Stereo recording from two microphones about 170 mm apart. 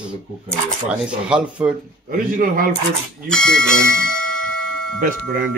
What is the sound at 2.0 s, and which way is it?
Speech, 55° right (ahead or behind).